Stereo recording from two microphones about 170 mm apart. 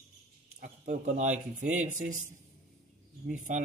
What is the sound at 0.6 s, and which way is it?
Speech, 45° right (ahead or behind).